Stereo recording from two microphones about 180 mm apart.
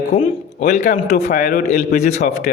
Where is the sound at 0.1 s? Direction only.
35° left (ahead or behind).